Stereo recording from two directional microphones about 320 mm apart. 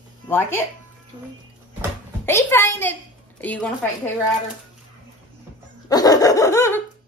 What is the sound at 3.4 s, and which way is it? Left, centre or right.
Speech, centre.